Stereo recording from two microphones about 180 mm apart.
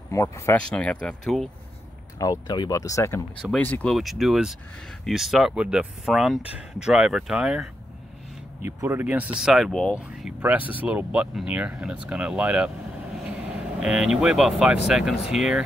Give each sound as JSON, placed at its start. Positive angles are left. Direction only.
{"t": 0.1, "sound": "speech", "side_deg": 15}
{"t": 2.1, "sound": "speech", "side_deg": 20}
{"t": 8.6, "sound": "speech", "side_deg": -10}
{"t": 13.7, "sound": "speech", "side_deg": -5}